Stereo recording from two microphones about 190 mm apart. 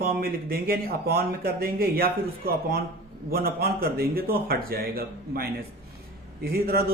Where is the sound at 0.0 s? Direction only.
55° right (ahead or behind).